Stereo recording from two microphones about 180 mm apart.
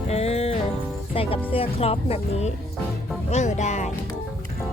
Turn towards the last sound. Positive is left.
turn(degrees=40)  # may be behind; listen again after turning